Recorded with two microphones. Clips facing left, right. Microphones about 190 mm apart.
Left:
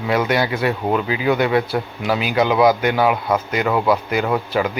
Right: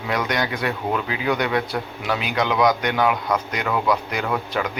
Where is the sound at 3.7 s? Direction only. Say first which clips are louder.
Left 3 dB; 30° left (ahead or behind).